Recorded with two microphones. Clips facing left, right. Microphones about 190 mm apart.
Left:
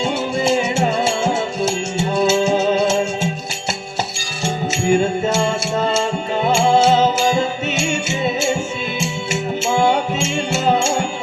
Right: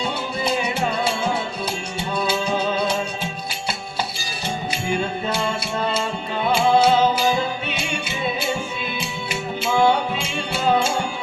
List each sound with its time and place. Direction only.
2.1 s music: 25° left (ahead or behind)
4.4 s music: 45° left (ahead or behind)
6.4 s music: 25° left (ahead or behind)